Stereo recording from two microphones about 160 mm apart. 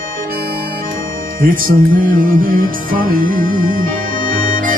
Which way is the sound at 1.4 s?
60° right (ahead or behind).